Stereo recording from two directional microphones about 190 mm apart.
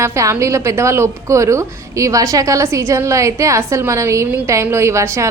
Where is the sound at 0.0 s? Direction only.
15° right (ahead or behind).